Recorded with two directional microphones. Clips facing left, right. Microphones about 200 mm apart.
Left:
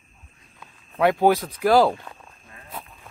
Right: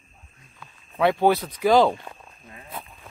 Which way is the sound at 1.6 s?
5° left (ahead or behind).